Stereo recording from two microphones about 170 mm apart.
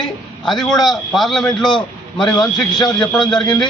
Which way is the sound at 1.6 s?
25° left (ahead or behind).